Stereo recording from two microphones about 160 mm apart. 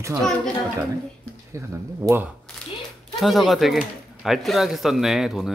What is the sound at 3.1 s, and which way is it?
Speech, centre (ahead or behind).